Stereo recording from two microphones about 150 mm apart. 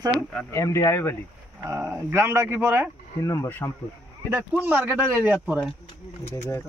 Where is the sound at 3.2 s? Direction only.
20° left (ahead or behind).